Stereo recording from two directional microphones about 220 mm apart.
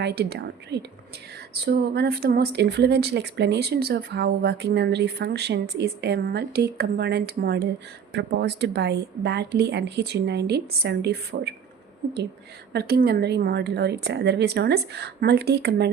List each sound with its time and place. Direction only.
0.0 s speech: 45° right (ahead or behind)
12.7 s speech: 45° right (ahead or behind)